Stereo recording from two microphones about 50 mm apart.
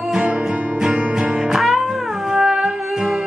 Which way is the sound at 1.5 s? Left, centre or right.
Centre.